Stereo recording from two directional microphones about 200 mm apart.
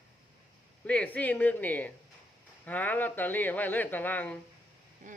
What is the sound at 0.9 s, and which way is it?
Speech, 5° left (ahead or behind).